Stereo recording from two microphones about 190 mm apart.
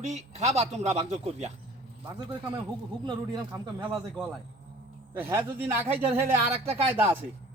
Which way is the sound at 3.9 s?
Centre (ahead or behind).